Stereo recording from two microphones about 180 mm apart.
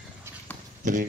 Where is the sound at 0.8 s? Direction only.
45° right (ahead or behind).